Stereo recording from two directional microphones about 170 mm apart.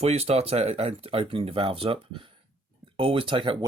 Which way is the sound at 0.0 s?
40° right (ahead or behind).